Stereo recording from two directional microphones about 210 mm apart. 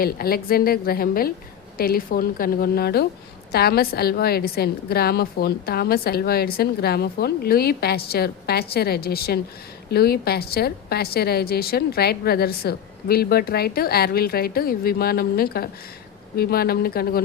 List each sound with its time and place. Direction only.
0.0 s a woman's voice: 45° left (ahead or behind)